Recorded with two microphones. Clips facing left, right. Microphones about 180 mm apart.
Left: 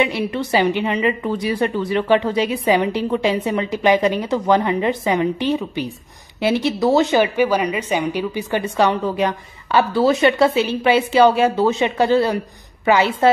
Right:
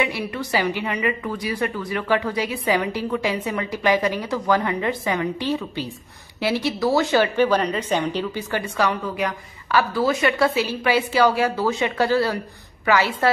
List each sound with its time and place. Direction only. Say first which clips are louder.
0.0 s a woman's voice: left 5 dB; 25° left (ahead or behind)